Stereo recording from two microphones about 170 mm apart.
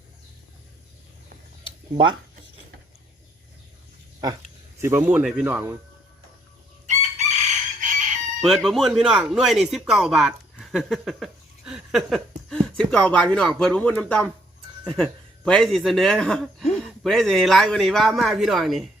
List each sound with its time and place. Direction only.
4.2 s speech: 25° right (ahead or behind)
6.8 s chicken: 45° right (ahead or behind)
8.4 s speech: centre (ahead or behind)